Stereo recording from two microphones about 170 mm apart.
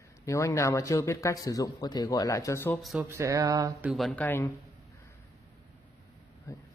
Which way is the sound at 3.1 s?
15° right (ahead or behind).